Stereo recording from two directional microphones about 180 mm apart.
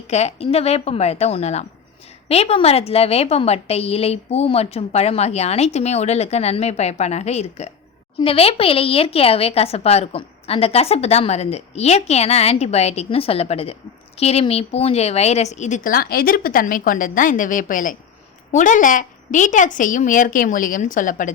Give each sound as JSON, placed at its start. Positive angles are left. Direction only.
{"t": 0.1, "sound": "a woman's voice", "side_deg": 35}